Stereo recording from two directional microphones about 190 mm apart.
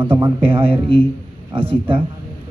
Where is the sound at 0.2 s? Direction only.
30° right (ahead or behind).